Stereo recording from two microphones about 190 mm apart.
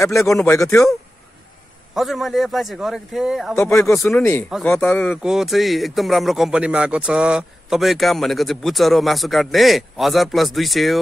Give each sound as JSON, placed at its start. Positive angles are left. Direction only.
{"t": 0.0, "sound": "speech", "side_deg": 15}
{"t": 2.0, "sound": "speech", "side_deg": 0}
{"t": 3.5, "sound": "speech", "side_deg": 10}
{"t": 4.5, "sound": "speech", "side_deg": 0}
{"t": 4.7, "sound": "speech", "side_deg": 10}
{"t": 5.2, "sound": "speech", "side_deg": 0}